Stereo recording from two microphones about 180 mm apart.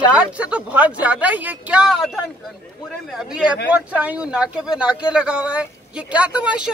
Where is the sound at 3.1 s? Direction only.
5° right (ahead or behind).